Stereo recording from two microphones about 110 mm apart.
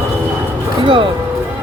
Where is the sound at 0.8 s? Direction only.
50° right (ahead or behind).